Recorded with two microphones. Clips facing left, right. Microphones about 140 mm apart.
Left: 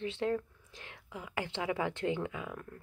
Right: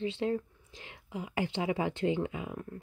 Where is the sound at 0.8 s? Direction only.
20° right (ahead or behind).